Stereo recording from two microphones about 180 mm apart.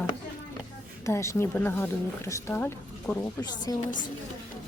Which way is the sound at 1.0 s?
15° left (ahead or behind).